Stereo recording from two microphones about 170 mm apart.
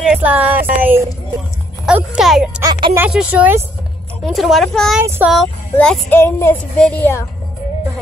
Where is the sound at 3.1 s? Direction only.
5° right (ahead or behind).